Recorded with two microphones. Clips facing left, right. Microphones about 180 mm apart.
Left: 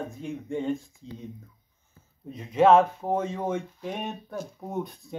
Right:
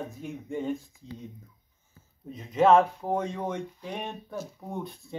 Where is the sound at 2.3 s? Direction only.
Centre (ahead or behind).